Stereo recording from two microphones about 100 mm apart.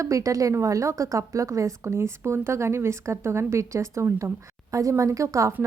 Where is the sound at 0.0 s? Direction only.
35° right (ahead or behind).